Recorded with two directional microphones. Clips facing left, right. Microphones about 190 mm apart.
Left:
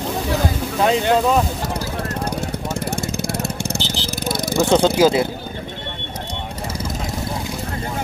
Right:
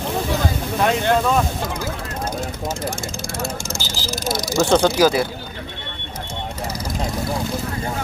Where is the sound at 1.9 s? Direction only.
65° left (ahead or behind).